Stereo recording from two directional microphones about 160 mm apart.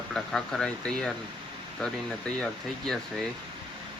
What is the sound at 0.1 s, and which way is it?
Speech, 5° left (ahead or behind).